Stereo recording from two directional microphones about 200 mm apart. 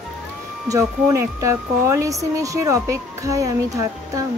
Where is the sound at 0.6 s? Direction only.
15° right (ahead or behind).